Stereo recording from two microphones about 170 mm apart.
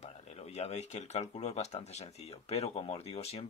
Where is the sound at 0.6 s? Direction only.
40° left (ahead or behind).